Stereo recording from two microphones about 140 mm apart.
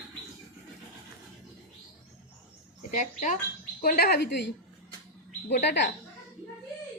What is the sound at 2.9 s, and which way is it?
Speech, 65° left (ahead or behind).